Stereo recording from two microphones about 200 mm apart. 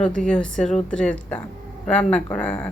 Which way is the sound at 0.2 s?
5° left (ahead or behind).